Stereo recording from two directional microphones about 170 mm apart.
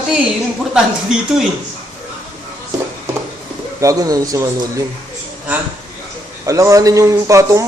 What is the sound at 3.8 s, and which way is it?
Speech, 20° right (ahead or behind).